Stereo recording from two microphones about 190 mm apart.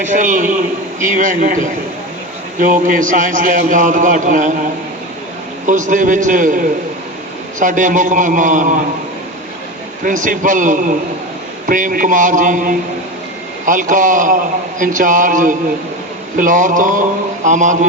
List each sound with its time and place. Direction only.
0.0 s a man's voice: 40° right (ahead or behind)
5.6 s a man's voice: 40° right (ahead or behind)
10.0 s a man's voice: 45° right (ahead or behind)